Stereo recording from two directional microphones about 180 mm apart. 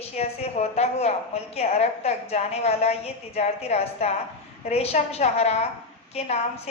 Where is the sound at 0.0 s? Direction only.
35° left (ahead or behind).